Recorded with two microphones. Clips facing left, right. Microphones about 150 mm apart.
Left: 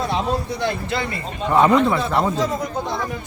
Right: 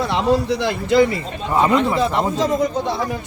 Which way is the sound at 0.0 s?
75° right (ahead or behind).